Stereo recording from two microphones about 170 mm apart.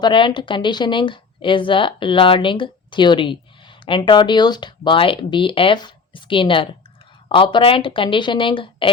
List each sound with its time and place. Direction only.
0.0 s a woman's voice: 30° left (ahead or behind)